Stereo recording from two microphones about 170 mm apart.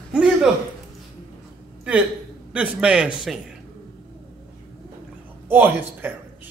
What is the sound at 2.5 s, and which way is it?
Speech, 5° right (ahead or behind).